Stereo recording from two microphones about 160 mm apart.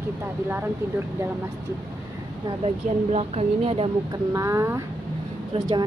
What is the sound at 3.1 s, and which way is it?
Speech, 40° right (ahead or behind).